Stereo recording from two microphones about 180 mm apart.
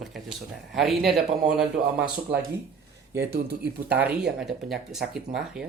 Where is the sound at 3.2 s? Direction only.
65° right (ahead or behind).